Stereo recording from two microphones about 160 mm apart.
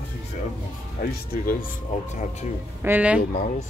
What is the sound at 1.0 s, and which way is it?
Speech, 70° left (ahead or behind).